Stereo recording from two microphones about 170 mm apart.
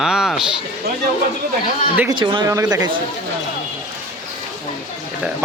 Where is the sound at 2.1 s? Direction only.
30° right (ahead or behind).